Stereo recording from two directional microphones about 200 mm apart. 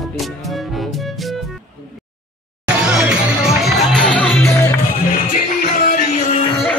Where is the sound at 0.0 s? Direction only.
Centre (ahead or behind).